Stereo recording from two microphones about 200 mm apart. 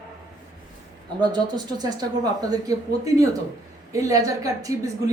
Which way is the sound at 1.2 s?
20° right (ahead or behind).